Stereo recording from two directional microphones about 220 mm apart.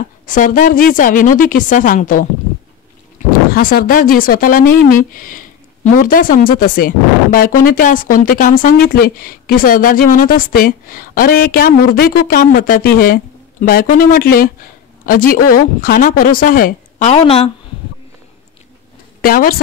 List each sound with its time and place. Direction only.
0.3 s speech: 35° left (ahead or behind)
3.5 s speech: 40° left (ahead or behind)
19.2 s speech: 40° left (ahead or behind)